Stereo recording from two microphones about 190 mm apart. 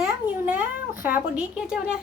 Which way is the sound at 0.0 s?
15° right (ahead or behind).